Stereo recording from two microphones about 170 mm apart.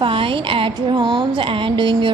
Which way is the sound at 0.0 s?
30° right (ahead or behind).